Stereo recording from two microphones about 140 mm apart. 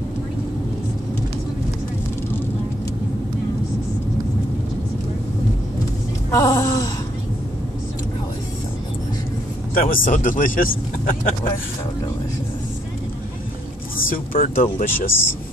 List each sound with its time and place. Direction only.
6.3 s a sound: 20° left (ahead or behind)
9.8 s speech: 85° left
13.9 s speech: 85° left; by 14.9 s 70° left (ahead or behind)
14.9 s speech: 15° left (ahead or behind)